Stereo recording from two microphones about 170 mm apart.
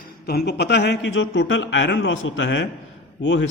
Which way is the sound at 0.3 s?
70° left (ahead or behind).